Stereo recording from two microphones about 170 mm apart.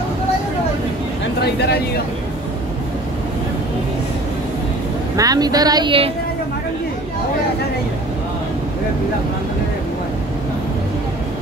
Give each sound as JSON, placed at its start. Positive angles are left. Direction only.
{"t": 1.4, "sound": "speech", "side_deg": 75}
{"t": 5.1, "sound": "a woman's voice", "side_deg": -20}